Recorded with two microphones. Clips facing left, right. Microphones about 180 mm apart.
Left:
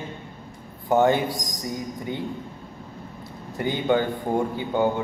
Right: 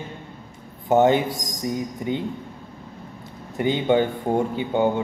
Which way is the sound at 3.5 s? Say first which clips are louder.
Right 3 dB; 20° right (ahead or behind).